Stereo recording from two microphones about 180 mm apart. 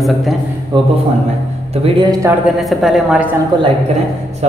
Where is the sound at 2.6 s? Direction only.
Centre (ahead or behind).